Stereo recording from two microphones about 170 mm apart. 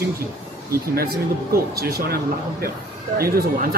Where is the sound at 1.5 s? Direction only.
60° right (ahead or behind).